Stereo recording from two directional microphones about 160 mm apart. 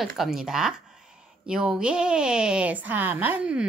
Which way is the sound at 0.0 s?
5° right (ahead or behind).